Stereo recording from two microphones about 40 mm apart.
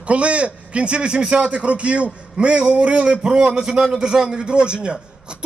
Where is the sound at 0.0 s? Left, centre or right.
Right.